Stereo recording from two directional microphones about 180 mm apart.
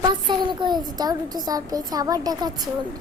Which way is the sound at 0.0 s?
25° right (ahead or behind).